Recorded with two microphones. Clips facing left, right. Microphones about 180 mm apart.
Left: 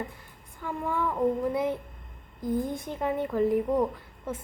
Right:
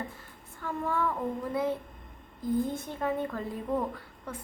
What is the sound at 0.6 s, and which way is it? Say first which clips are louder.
Speech: left 1 dB; 15° left (ahead or behind).